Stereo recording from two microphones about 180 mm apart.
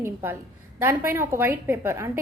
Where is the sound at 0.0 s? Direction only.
10° right (ahead or behind).